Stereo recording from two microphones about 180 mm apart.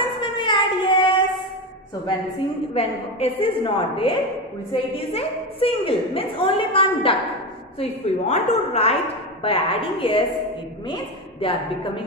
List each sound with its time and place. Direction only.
0.4 s child singing: 25° left (ahead or behind)
2.7 s a woman's voice: 30° left (ahead or behind)